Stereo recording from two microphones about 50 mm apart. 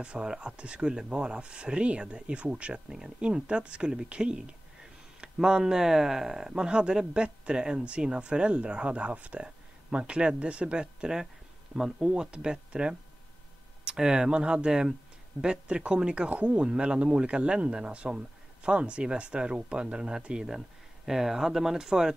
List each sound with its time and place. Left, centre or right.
0.0 s speech: centre
20.4 s speech: centre